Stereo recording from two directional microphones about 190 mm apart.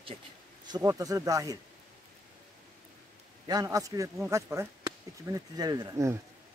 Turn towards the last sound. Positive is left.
turn(degrees=-15)  # may be behind; listen again after turning